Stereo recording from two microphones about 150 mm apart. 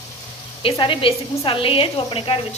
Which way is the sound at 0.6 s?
35° left (ahead or behind).